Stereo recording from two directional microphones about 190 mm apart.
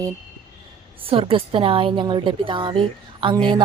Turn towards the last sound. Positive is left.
turn(degrees=-25)  # may be behind; listen again after turning